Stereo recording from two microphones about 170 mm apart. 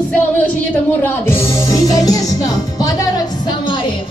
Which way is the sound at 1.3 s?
15° left (ahead or behind).